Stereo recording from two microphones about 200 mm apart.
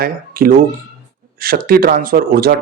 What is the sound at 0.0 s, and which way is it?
Speech, 45° right (ahead or behind).